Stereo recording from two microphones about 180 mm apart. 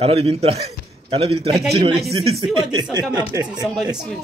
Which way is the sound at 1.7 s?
30° right (ahead or behind).